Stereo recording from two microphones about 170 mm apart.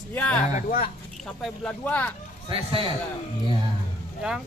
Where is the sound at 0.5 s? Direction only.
50° left (ahead or behind).